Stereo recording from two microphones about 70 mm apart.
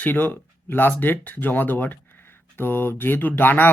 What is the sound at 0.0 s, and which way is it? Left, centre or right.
Speech, left.